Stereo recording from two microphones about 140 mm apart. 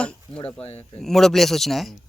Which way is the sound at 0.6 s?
50° left (ahead or behind).